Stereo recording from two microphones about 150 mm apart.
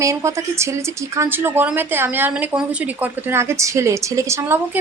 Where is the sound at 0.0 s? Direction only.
20° right (ahead or behind).